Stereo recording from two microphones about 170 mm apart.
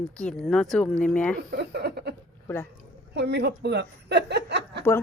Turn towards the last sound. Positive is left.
turn(degrees=-85)